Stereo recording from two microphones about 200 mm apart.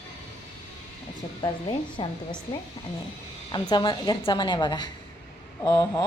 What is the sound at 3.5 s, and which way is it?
Speech, 20° left (ahead or behind).